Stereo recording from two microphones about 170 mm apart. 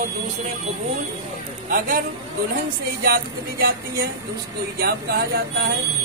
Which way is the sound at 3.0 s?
65° right (ahead or behind).